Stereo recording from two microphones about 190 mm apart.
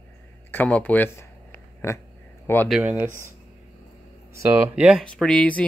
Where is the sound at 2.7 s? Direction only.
10° right (ahead or behind).